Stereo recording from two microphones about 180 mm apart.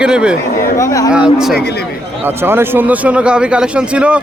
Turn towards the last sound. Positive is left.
turn(degrees=-5)  # may be behind; listen again after turning